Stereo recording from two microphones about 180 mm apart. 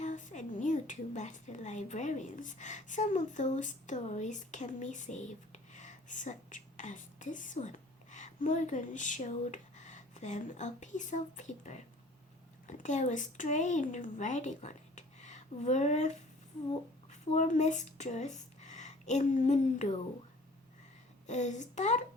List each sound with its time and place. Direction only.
0.0 s a woman's voice: 45° left (ahead or behind)
21.2 s speech: 40° left (ahead or behind)